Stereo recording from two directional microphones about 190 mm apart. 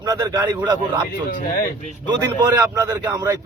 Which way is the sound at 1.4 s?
50° left (ahead or behind).